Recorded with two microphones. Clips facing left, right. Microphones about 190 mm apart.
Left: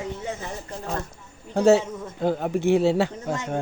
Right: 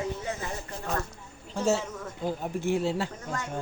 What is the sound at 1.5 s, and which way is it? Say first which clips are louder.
Speech: left 9 dB; 65° left (ahead or behind).